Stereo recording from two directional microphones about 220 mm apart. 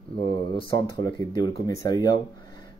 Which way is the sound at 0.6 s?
15° left (ahead or behind).